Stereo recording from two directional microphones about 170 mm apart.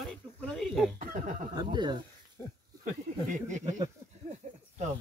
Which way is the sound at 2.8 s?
50° right (ahead or behind).